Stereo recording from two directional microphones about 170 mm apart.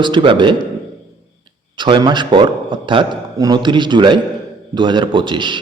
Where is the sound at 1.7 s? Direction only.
30° right (ahead or behind).